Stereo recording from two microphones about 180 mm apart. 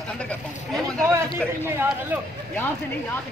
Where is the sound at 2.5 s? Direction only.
10° left (ahead or behind).